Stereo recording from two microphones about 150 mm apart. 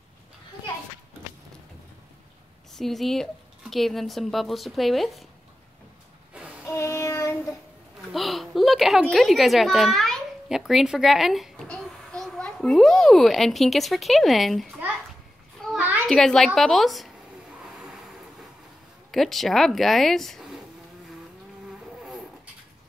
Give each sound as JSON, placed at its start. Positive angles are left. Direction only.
{"t": 2.7, "sound": "speech", "side_deg": 0}
{"t": 6.3, "sound": "music", "side_deg": -10}
{"t": 6.6, "sound": "child singing", "side_deg": 20}
{"t": 8.1, "sound": "a child's voice", "side_deg": 0}
{"t": 15.8, "sound": "children playing", "side_deg": -10}
{"t": 16.1, "sound": "speech", "side_deg": 0}
{"t": 17.6, "sound": "a sound", "side_deg": -5}
{"t": 19.1, "sound": "speech", "side_deg": 0}